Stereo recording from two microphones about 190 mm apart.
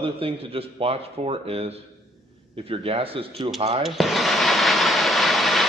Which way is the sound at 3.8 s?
Centre (ahead or behind).